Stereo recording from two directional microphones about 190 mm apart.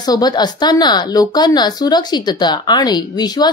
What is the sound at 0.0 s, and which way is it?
A woman's voice, 20° left (ahead or behind).